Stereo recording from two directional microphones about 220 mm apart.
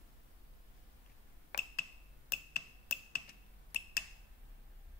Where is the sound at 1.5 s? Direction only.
45° left (ahead or behind).